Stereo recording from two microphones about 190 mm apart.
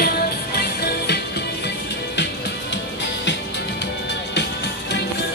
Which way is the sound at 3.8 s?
65° left (ahead or behind).